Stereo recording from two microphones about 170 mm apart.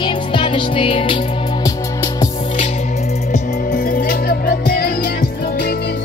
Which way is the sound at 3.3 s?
55° left (ahead or behind).